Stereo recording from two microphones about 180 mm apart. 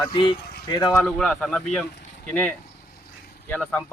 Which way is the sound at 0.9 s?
5° left (ahead or behind).